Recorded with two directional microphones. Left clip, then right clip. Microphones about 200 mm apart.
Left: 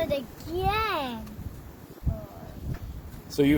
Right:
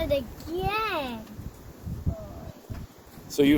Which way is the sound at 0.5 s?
20° right (ahead or behind).